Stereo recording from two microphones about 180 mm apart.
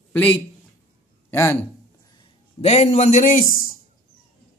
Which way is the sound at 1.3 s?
15° left (ahead or behind).